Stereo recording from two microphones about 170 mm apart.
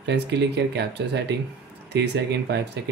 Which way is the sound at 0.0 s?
85° right.